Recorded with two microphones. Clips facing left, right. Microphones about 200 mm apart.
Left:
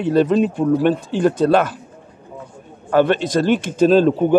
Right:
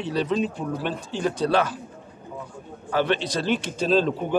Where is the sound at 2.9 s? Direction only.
50° left (ahead or behind).